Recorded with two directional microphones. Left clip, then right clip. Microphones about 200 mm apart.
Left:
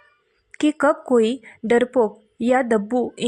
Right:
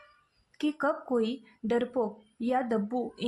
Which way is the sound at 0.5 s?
30° left (ahead or behind).